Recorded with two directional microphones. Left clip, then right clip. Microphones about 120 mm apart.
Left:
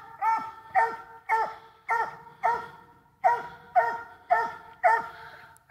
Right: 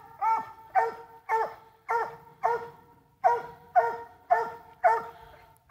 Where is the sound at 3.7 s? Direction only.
25° right (ahead or behind).